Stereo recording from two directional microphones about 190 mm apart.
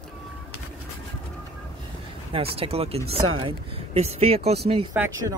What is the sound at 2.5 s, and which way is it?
Speech, 30° right (ahead or behind).